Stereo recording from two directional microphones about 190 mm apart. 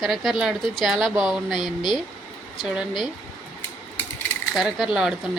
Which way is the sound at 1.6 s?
25° left (ahead or behind).